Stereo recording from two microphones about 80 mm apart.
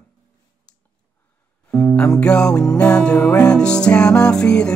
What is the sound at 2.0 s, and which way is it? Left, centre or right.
Music, centre.